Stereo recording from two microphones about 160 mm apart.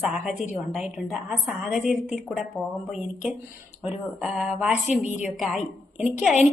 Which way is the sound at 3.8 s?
5° right (ahead or behind).